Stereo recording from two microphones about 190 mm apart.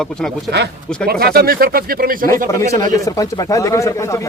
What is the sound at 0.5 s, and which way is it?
Speech, 60° right (ahead or behind).